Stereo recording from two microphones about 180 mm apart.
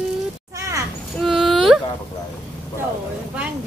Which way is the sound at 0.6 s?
15° right (ahead or behind).